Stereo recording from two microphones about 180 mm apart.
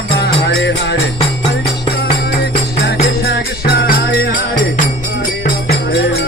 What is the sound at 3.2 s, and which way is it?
Music, 60° left (ahead or behind).